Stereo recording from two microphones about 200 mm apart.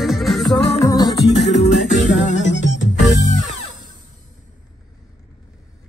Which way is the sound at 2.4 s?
65° left (ahead or behind).